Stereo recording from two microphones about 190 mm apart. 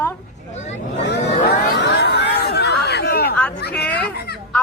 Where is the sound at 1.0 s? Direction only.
60° left (ahead or behind).